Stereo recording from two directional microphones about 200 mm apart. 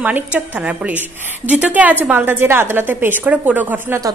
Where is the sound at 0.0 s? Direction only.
10° right (ahead or behind).